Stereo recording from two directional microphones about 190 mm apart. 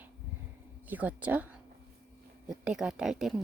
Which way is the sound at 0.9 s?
10° right (ahead or behind).